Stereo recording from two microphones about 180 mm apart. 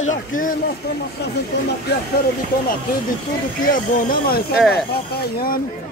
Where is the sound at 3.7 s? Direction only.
50° left (ahead or behind).